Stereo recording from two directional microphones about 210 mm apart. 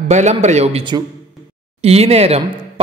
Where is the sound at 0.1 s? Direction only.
35° right (ahead or behind).